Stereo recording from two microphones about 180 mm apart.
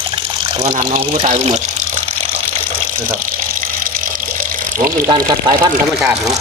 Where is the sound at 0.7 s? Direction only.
35° right (ahead or behind).